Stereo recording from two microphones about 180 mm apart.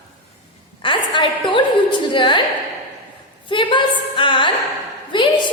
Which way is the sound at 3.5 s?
25° left (ahead or behind).